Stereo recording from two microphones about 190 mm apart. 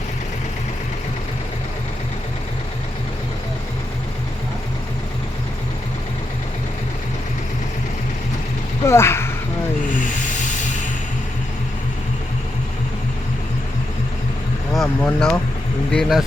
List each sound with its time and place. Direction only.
8.9 s speech: 15° left (ahead or behind)
14.7 s vehicle: centre (ahead or behind)
15.9 s speech: centre (ahead or behind)